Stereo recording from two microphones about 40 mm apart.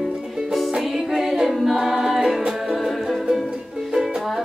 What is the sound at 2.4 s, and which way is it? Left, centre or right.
Music, centre.